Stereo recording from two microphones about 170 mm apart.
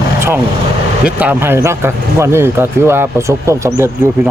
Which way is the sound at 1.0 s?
10° right (ahead or behind).